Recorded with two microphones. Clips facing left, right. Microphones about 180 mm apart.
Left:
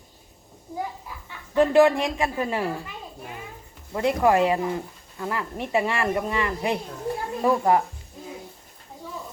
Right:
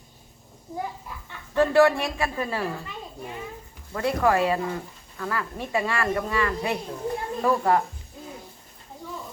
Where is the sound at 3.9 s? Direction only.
15° left (ahead or behind).